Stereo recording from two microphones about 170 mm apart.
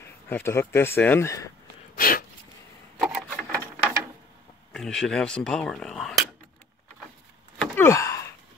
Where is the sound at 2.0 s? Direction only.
60° left (ahead or behind).